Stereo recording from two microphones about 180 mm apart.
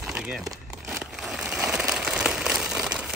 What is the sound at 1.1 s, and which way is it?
Crumpling, 5° right (ahead or behind).